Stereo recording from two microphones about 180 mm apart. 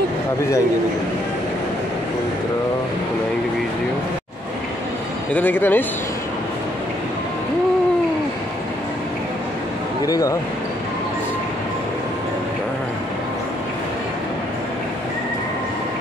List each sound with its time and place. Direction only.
5.3 s speech: 10° left (ahead or behind)
10.0 s speech: 20° left (ahead or behind)